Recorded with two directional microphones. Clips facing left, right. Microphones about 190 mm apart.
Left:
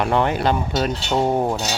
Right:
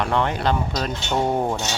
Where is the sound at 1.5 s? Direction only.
35° left (ahead or behind).